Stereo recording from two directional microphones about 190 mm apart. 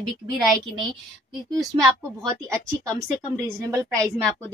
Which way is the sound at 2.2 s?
15° right (ahead or behind).